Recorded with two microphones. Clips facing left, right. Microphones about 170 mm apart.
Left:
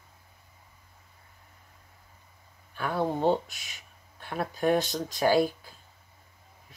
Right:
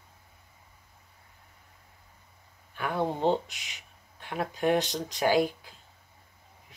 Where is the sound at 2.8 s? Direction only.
15° right (ahead or behind).